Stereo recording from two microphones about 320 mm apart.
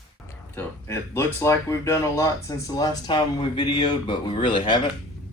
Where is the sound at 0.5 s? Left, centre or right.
Centre.